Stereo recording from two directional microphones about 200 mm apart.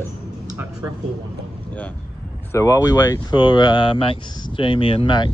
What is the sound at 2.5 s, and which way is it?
Speech, 15° left (ahead or behind).